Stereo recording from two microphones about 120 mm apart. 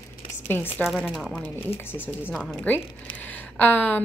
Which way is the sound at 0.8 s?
Centre (ahead or behind).